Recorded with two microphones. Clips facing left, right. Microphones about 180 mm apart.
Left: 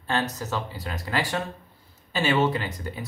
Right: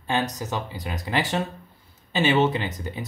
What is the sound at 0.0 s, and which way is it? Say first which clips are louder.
Speech: right 1 dB; 15° right (ahead or behind).